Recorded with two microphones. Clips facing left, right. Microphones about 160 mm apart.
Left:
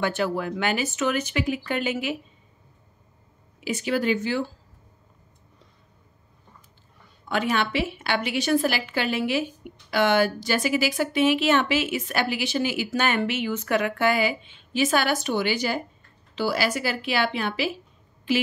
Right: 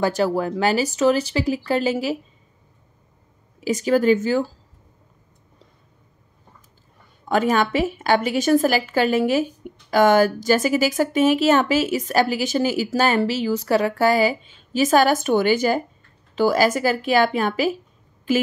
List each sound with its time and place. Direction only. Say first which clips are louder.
0.0 s speech: right 5 dB; 40° right (ahead or behind)
3.6 s a woman's voice: right 7 dB; 40° right (ahead or behind)
7.2 s a woman's voice: right 6 dB; 45° right (ahead or behind)